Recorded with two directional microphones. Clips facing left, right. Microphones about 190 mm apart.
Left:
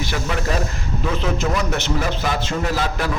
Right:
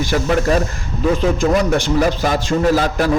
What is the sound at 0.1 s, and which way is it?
Speech, 40° right (ahead or behind).